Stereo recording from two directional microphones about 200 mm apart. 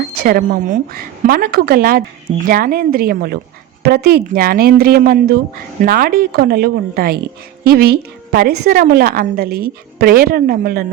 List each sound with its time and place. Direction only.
0.2 s a woman's voice: 45° right (ahead or behind)